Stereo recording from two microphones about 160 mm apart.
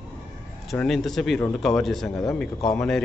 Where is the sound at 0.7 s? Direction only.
Centre (ahead or behind).